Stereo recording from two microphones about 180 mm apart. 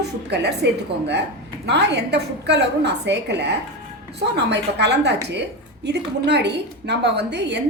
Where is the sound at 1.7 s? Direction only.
70° right (ahead or behind).